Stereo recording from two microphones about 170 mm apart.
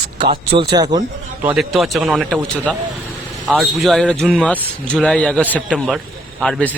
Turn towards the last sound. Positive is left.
turn(degrees=5)  # may be behind; listen again after turning